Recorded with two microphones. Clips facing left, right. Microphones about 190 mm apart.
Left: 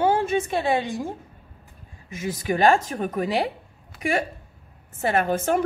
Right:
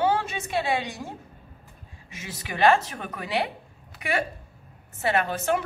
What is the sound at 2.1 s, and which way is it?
A woman's voice, 45° left (ahead or behind).